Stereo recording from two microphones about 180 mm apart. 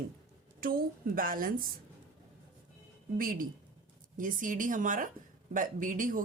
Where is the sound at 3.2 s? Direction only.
50° right (ahead or behind).